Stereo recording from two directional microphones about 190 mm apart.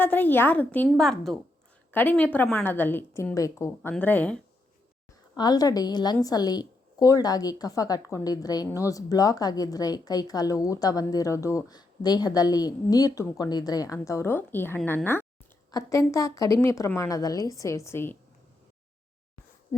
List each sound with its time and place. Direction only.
0.0 s a woman's voice: 10° left (ahead or behind)
5.4 s a woman's voice: 20° left (ahead or behind)